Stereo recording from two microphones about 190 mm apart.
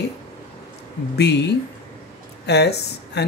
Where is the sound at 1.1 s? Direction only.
65° left (ahead or behind).